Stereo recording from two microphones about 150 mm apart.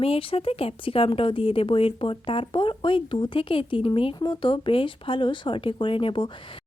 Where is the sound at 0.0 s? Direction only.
40° left (ahead or behind).